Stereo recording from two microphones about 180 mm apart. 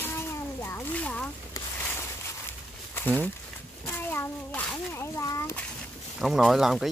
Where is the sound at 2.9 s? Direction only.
10° left (ahead or behind).